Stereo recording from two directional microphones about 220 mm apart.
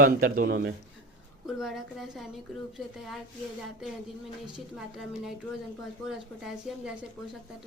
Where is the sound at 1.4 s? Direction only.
Centre (ahead or behind).